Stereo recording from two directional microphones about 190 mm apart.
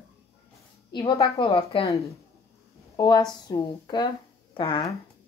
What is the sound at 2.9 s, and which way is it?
Speech, 20° left (ahead or behind).